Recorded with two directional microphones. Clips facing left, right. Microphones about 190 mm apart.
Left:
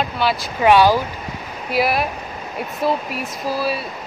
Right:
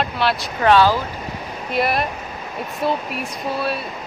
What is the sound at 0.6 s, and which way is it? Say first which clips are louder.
Speech: left 2 dB; 15° left (ahead or behind).